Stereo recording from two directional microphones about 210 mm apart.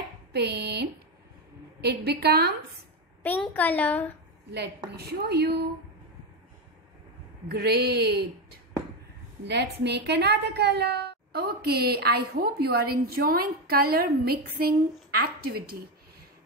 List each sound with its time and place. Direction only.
0.3 s a woman's voice: 50° right (ahead or behind)
3.3 s a woman's voice: 10° left (ahead or behind)
4.9 s a woman's voice: 50° right (ahead or behind)
7.4 s a woman's voice: 50° right (ahead or behind)